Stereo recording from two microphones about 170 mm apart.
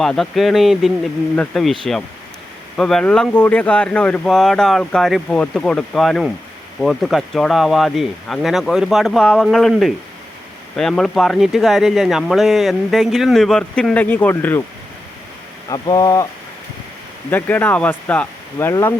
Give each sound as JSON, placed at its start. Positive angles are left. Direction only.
{"t": 0.0, "sound": "speech", "side_deg": 0}
{"t": 2.7, "sound": "speech", "side_deg": 5}
{"t": 15.7, "sound": "speech", "side_deg": 25}
{"t": 17.3, "sound": "speech", "side_deg": 10}